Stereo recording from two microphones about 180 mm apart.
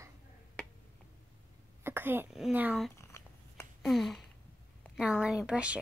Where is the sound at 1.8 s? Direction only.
10° right (ahead or behind).